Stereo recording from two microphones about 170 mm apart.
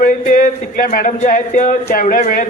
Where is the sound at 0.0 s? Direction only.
55° left (ahead or behind).